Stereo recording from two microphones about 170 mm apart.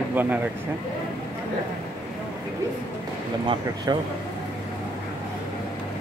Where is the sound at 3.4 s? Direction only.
25° right (ahead or behind).